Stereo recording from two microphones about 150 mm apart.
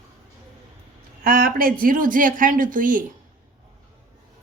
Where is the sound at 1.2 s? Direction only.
75° right (ahead or behind).